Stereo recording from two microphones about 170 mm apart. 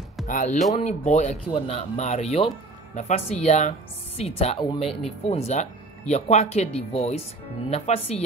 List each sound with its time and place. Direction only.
0.3 s speech: 50° left (ahead or behind)